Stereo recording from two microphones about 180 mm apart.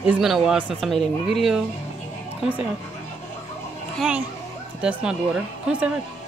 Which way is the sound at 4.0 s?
5° right (ahead or behind).